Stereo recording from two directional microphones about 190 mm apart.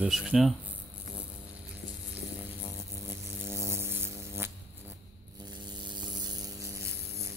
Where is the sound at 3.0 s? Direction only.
15° right (ahead or behind).